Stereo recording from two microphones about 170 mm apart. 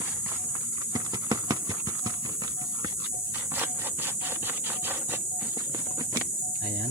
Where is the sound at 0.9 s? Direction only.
20° right (ahead or behind).